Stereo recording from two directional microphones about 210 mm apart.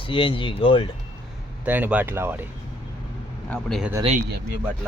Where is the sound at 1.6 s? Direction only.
10° right (ahead or behind).